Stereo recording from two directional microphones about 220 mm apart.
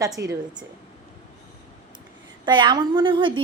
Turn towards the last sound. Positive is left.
turn(degrees=-20)  # may be behind; listen again after turning